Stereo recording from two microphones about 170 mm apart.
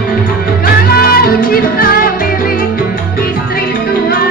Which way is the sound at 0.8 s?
60° left (ahead or behind).